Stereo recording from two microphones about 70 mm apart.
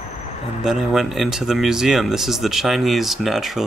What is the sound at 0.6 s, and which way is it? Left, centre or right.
Speech, centre.